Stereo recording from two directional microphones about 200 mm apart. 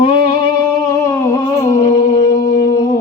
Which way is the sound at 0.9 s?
15° left (ahead or behind).